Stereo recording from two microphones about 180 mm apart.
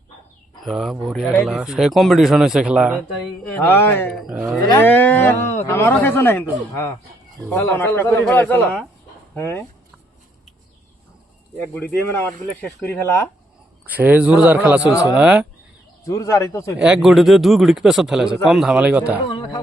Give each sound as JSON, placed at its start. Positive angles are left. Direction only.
{"t": 0.6, "sound": "speech", "side_deg": 0}
{"t": 3.5, "sound": "speech", "side_deg": 10}
{"t": 4.2, "sound": "speech", "side_deg": -5}
{"t": 4.8, "sound": "speech", "side_deg": 10}
{"t": 11.5, "sound": "speech", "side_deg": 10}
{"t": 13.8, "sound": "a man's voice", "side_deg": -10}
{"t": 16.0, "sound": "speech", "side_deg": 20}
{"t": 16.7, "sound": "speech", "side_deg": -5}
{"t": 19.3, "sound": "a sound", "side_deg": 25}